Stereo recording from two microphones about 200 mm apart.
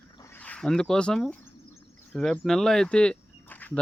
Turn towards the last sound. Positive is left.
turn(degrees=10)  # may be behind; listen again after turning